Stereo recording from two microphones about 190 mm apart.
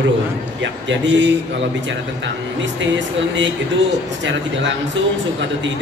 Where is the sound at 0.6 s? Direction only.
70° right (ahead or behind).